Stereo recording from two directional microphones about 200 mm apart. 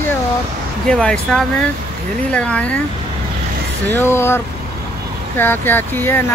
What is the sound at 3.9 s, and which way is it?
Speech, 10° left (ahead or behind).